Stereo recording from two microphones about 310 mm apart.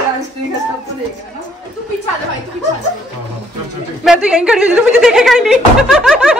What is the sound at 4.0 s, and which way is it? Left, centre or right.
A woman's voice, centre.